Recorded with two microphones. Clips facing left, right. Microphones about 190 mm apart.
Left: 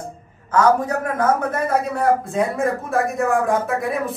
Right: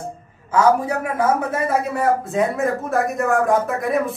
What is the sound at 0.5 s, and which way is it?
A man's voice, 10° right (ahead or behind).